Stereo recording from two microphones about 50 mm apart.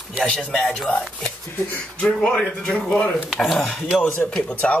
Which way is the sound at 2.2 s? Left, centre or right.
Centre.